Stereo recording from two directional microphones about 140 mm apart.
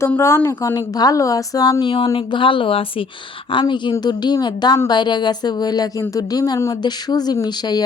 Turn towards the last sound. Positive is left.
turn(degrees=30)  # may be behind; listen again after turning